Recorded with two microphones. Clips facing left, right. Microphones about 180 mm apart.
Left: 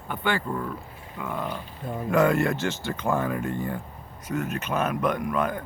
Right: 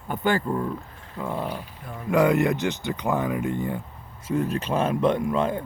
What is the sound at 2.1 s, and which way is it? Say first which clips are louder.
Speech: right 2 dB; 20° right (ahead or behind).